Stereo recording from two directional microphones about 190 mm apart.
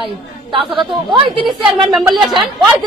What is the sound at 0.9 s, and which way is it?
Speech, 25° right (ahead or behind).